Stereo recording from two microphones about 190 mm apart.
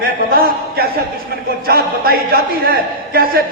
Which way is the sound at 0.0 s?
50° right (ahead or behind).